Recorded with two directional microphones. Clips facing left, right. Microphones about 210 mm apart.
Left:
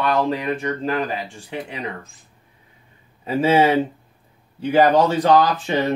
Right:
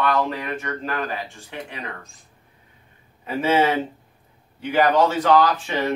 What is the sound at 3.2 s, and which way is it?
Speech, 30° left (ahead or behind).